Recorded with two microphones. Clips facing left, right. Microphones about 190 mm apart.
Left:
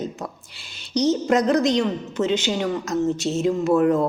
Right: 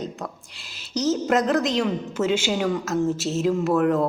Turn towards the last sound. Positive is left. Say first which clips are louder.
# left 2 dB
turn(degrees=0)  # may be behind; listen again after turning